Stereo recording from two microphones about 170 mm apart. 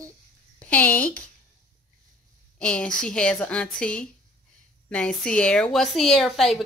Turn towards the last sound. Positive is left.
turn(degrees=0)  # may be behind; listen again after turning